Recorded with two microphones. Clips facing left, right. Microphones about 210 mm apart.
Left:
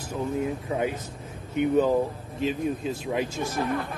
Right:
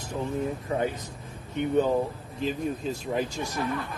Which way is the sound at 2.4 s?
5° left (ahead or behind).